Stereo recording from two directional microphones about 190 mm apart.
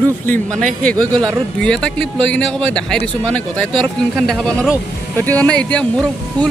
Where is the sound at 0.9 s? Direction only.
25° right (ahead or behind).